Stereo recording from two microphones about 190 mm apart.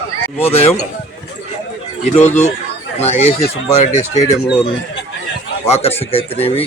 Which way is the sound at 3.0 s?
35° left (ahead or behind).